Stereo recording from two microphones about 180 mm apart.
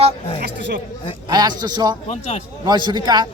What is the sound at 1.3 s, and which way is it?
A man's voice, 25° right (ahead or behind).